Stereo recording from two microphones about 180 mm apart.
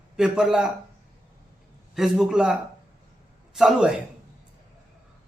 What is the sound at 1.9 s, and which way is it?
Speech, centre (ahead or behind).